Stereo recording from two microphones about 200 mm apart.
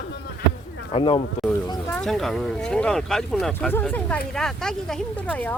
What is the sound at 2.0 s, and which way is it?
Speech, centre (ahead or behind).